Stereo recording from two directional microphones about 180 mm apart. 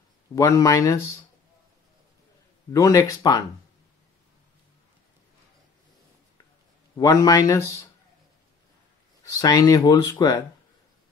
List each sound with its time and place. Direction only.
0.4 s speech: 20° left (ahead or behind)
2.7 s speech: 20° left (ahead or behind)
7.0 s speech: 20° left (ahead or behind)
9.2 s speech: 20° left (ahead or behind)